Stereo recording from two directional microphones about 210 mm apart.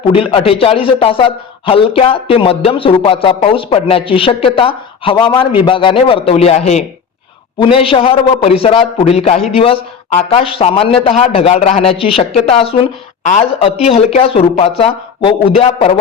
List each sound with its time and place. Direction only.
0.1 s a man's voice: 25° left (ahead or behind)